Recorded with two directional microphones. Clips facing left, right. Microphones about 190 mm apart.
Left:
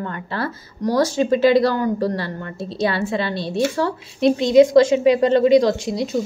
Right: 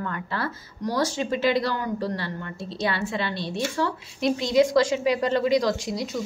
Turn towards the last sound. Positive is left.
turn(degrees=25)  # may be behind; listen again after turning